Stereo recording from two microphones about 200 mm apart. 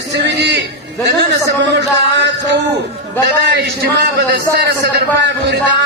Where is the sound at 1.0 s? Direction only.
60° right (ahead or behind).